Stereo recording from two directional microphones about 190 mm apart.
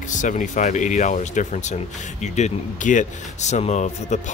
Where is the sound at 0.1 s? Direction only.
40° left (ahead or behind).